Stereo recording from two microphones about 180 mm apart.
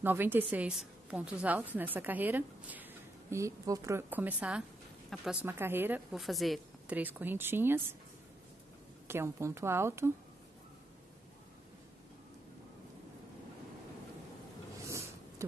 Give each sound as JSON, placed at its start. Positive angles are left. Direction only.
{"t": 0.0, "sound": "a woman's voice", "side_deg": -10}
{"t": 6.1, "sound": "a woman's voice", "side_deg": 0}
{"t": 9.0, "sound": "a woman's voice", "side_deg": -15}
{"t": 14.9, "sound": "a sound", "side_deg": -15}